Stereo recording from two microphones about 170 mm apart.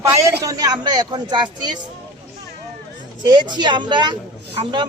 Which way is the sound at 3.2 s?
25° right (ahead or behind).